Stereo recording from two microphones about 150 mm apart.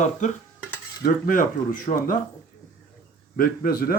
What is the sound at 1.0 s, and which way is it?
Speech, 65° left (ahead or behind).